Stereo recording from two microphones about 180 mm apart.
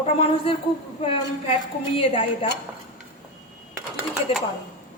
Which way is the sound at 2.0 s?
30° left (ahead or behind).